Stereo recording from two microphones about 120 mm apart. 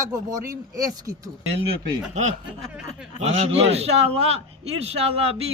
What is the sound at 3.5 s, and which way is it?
Speech, 60° right (ahead or behind).